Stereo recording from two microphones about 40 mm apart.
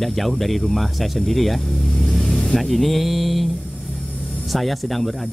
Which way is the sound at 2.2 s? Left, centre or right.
Centre.